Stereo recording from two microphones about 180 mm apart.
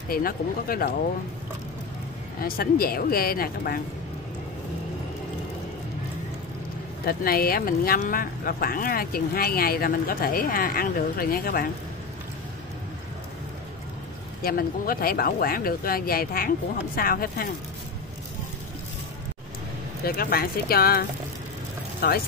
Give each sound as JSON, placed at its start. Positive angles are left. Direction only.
{"t": 0.1, "sound": "speech", "side_deg": 55}
{"t": 2.4, "sound": "speech", "side_deg": 55}
{"t": 7.1, "sound": "speech", "side_deg": 55}
{"t": 14.4, "sound": "speech", "side_deg": 55}
{"t": 20.0, "sound": "speech", "side_deg": 55}
{"t": 22.0, "sound": "speech", "side_deg": 60}